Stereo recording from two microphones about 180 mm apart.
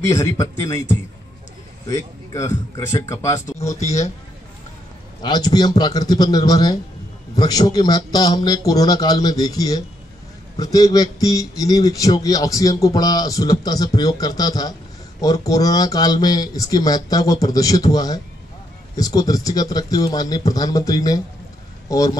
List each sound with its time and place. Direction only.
0.0 s a man's voice: 15° left (ahead or behind)
5.2 s a man's voice: 25° left (ahead or behind)